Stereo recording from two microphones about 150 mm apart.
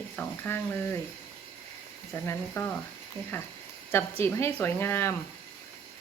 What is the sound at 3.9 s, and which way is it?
Speech, 15° left (ahead or behind).